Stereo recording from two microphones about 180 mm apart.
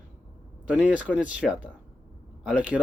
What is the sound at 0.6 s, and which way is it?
Speech, 5° right (ahead or behind).